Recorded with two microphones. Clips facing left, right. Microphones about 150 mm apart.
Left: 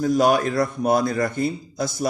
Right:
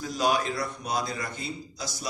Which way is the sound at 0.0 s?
55° left (ahead or behind).